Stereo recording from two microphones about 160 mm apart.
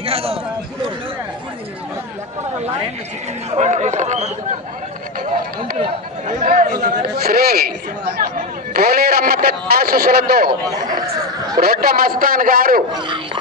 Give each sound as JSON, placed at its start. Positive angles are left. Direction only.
{"t": 0.0, "sound": "a sound", "side_deg": -40}
{"t": 3.5, "sound": "speech", "side_deg": -45}
{"t": 6.2, "sound": "a man's voice", "side_deg": -50}
{"t": 8.7, "sound": "a man's voice", "side_deg": -75}
{"t": 11.6, "sound": "a man's voice", "side_deg": -70}
{"t": 12.9, "sound": "speech", "side_deg": -30}